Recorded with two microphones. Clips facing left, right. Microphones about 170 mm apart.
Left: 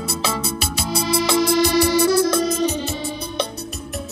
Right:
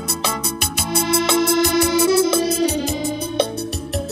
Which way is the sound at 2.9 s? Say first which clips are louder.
Right 5 dB; 40° right (ahead or behind).